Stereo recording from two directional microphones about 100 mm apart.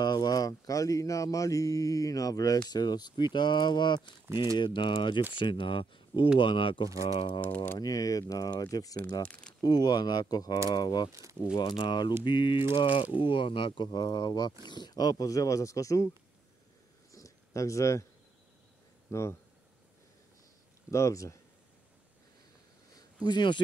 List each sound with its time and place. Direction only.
0.0 s speech: 45° left (ahead or behind)
7.4 s speech: 20° left (ahead or behind)
7.8 s speech: 35° left (ahead or behind)
9.2 s speech: 10° left (ahead or behind)
9.6 s speech: 45° left (ahead or behind)
11.1 s speech: 30° right (ahead or behind)
11.5 s speech: 45° left (ahead or behind)
17.1 s a sound: 30° left (ahead or behind)
19.0 s speech: 30° left (ahead or behind)
20.9 s speech: 30° left (ahead or behind)
23.2 s speech: 50° left (ahead or behind)